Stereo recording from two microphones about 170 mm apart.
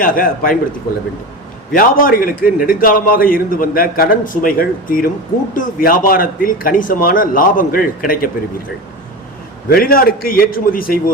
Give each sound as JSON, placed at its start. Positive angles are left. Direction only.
{"t": 0.0, "sound": "a man's voice", "side_deg": 55}
{"t": 1.7, "sound": "a man's voice", "side_deg": 55}
{"t": 9.6, "sound": "a man's voice", "side_deg": 60}